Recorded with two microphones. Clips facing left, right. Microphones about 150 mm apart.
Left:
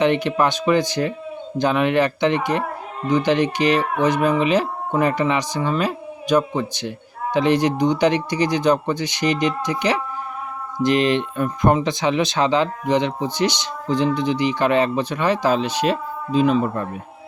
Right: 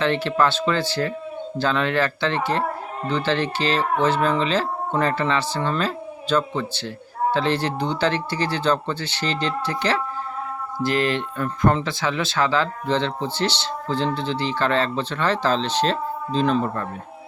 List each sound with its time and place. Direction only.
0.0 s speech: 15° left (ahead or behind)